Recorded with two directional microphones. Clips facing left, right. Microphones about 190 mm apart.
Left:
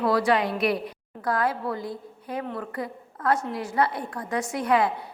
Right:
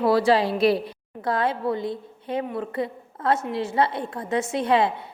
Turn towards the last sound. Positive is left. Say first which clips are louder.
# right 2 dB
turn(degrees=-25)  # may be behind; listen again after turning